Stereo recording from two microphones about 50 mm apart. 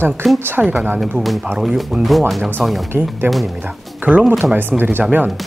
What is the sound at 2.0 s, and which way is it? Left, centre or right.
Speech, centre.